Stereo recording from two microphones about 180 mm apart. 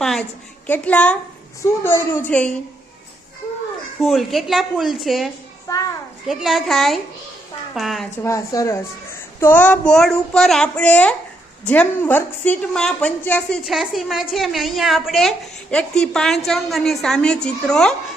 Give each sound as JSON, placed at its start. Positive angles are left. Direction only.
{"t": 0.0, "sound": "a sound", "side_deg": 0}
{"t": 0.7, "sound": "a woman's voice", "side_deg": 10}
{"t": 4.0, "sound": "a woman's voice", "side_deg": 0}
{"t": 5.6, "sound": "a sound", "side_deg": 20}
{"t": 6.2, "sound": "a woman's voice", "side_deg": 0}
{"t": 8.2, "sound": "a woman's voice", "side_deg": 15}